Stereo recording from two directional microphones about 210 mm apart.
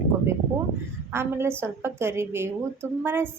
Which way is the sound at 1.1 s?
10° right (ahead or behind).